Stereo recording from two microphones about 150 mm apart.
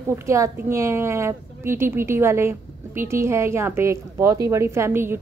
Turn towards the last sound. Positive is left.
turn(degrees=-15)  # may be behind; listen again after turning